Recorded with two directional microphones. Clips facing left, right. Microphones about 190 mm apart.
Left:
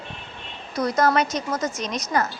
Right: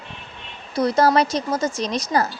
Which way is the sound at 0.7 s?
30° right (ahead or behind).